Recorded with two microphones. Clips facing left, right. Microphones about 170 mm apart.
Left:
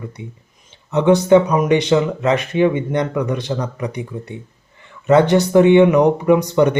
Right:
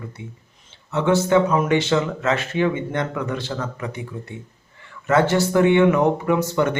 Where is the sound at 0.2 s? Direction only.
20° left (ahead or behind).